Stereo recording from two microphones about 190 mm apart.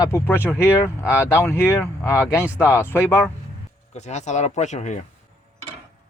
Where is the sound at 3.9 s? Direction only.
35° left (ahead or behind).